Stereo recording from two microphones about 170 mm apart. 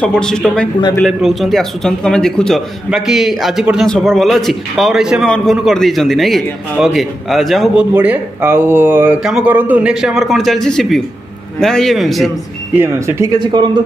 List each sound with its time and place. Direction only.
0.0 s a man's voice: 5° left (ahead or behind)
7.9 s a man's voice: 10° right (ahead or behind)
12.7 s speech: 15° right (ahead or behind)